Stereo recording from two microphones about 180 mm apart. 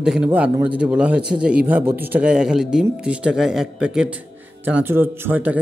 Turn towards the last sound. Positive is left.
turn(degrees=-10)  # may be behind; listen again after turning